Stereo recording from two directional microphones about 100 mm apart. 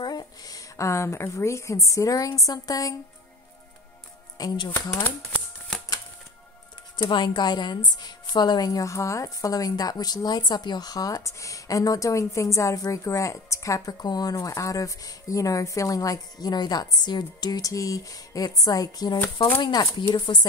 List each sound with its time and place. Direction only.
0.0 s a woman's voice: 40° left (ahead or behind)
4.4 s speech: 40° left (ahead or behind)
4.9 s speech: 20° left (ahead or behind)
7.0 s a woman's voice: 50° left (ahead or behind)